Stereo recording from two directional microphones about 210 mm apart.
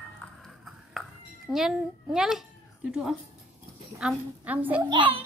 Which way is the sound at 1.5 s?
Centre (ahead or behind).